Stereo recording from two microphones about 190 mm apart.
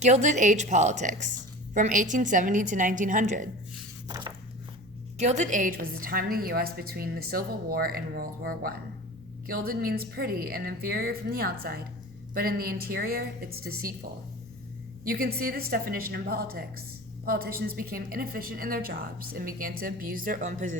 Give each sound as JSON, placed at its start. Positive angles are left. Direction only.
{"t": 0.0, "sound": "a woman's voice", "side_deg": -40}
{"t": 5.2, "sound": "a woman's voice", "side_deg": -40}